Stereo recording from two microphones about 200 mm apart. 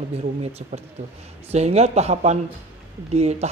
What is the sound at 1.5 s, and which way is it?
Speech, 30° right (ahead or behind).